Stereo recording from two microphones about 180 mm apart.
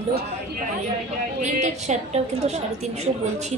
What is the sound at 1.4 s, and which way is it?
A woman's voice, 40° right (ahead or behind).